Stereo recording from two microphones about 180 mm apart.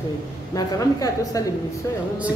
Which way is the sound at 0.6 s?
20° left (ahead or behind).